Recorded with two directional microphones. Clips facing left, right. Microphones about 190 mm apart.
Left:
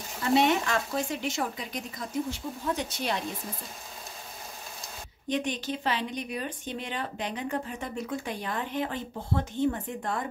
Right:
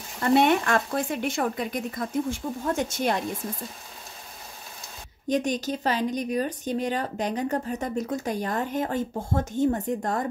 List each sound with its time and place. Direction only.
0.2 s speech: 55° right (ahead or behind)
5.3 s speech: 40° right (ahead or behind)